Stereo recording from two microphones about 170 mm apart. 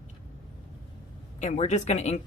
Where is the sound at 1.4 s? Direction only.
45° left (ahead or behind).